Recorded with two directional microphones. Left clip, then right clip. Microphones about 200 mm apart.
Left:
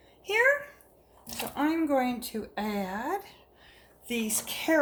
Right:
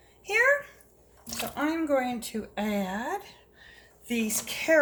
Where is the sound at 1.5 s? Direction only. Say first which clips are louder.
Even; 5° left (ahead or behind).